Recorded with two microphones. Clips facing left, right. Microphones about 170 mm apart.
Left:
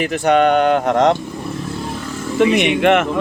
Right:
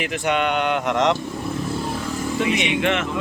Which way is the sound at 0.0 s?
40° left (ahead or behind).